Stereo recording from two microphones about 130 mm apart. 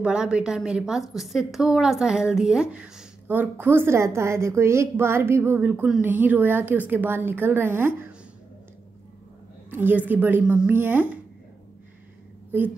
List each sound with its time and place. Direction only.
0.0 s a woman's voice: 5° right (ahead or behind)
9.7 s a woman's voice: 15° right (ahead or behind)